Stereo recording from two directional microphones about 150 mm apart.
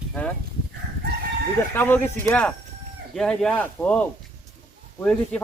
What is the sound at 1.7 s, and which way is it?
A man's voice, 15° left (ahead or behind).